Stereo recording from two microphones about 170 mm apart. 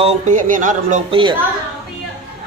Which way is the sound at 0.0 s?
45° right (ahead or behind).